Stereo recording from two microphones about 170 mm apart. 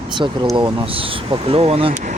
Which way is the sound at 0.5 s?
30° right (ahead or behind).